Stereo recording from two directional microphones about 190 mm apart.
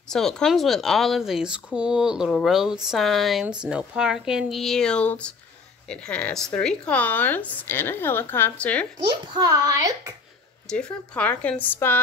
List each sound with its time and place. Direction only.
0.1 s speech: 5° left (ahead or behind)
9.0 s a child's voice: 20° right (ahead or behind)
10.7 s speech: 5° left (ahead or behind)